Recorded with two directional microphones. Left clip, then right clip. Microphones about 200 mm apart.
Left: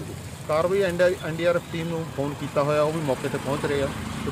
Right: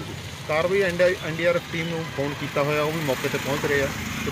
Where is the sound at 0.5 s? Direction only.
10° left (ahead or behind).